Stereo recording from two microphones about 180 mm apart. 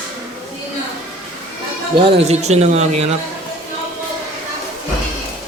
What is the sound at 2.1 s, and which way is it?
Speech, 35° right (ahead or behind).